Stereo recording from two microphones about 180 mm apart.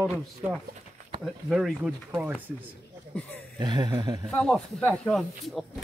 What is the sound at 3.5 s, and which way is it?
Speech, 25° right (ahead or behind).